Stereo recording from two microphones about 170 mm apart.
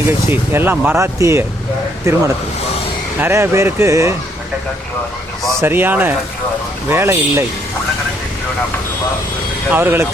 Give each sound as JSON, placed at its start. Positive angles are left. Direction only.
{"t": 0.1, "sound": "speech", "side_deg": -15}
{"t": 5.5, "sound": "speech", "side_deg": -15}
{"t": 9.7, "sound": "speech", "side_deg": -15}